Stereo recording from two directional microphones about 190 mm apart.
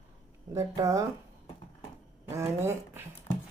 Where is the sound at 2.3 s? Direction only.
15° right (ahead or behind).